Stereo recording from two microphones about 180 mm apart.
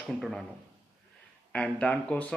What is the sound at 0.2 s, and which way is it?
Speech, centre (ahead or behind).